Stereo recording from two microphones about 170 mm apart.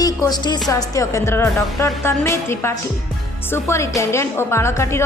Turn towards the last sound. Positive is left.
turn(degrees=15)  # may be behind; listen again after turning